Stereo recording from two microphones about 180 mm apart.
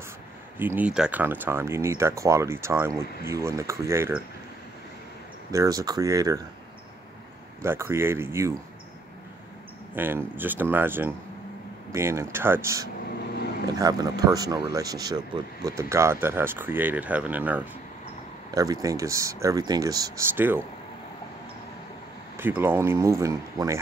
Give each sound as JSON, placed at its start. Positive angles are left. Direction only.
{"t": 0.6, "sound": "speech", "side_deg": -10}
{"t": 5.5, "sound": "speech", "side_deg": -20}
{"t": 7.6, "sound": "speech", "side_deg": -15}
{"t": 9.9, "sound": "speech", "side_deg": -10}
{"t": 18.5, "sound": "speech", "side_deg": -20}
{"t": 22.4, "sound": "speech", "side_deg": -10}